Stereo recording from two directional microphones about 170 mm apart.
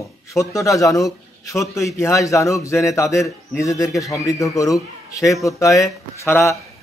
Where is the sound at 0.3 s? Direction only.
20° left (ahead or behind).